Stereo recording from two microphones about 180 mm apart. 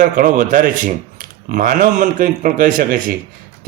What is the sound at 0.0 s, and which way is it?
A man's voice, 45° right (ahead or behind).